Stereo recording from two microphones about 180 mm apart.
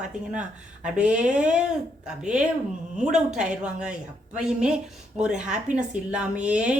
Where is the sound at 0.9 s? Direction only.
5° right (ahead or behind).